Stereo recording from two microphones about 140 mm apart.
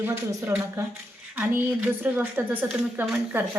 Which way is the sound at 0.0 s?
15° right (ahead or behind).